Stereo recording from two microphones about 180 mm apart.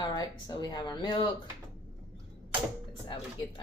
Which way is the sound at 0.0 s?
25° left (ahead or behind).